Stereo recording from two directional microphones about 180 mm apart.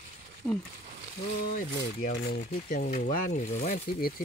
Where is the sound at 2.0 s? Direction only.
60° left (ahead or behind).